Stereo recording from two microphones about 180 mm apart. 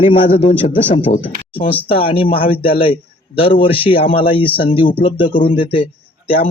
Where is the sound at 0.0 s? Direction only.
30° left (ahead or behind).